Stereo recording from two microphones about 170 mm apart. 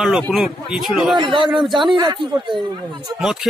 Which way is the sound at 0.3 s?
Centre (ahead or behind).